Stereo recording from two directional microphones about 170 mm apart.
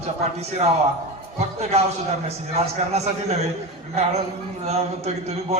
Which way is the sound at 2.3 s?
40° right (ahead or behind).